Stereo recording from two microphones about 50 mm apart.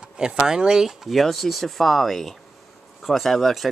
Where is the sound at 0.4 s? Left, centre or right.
Centre.